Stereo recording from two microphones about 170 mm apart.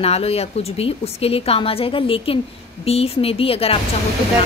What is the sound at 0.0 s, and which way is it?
A woman's voice, 35° left (ahead or behind).